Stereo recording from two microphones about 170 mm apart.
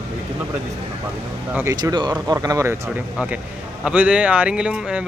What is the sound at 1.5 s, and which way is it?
Speech, 20° right (ahead or behind).